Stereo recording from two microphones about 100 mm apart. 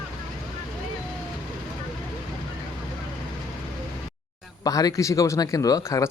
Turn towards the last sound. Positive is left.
turn(degrees=35)  # may be behind; listen again after turning